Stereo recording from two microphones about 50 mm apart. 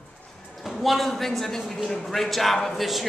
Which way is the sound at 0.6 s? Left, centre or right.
Centre.